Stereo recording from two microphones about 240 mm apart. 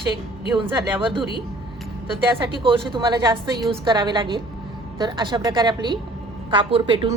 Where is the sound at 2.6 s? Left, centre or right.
Right.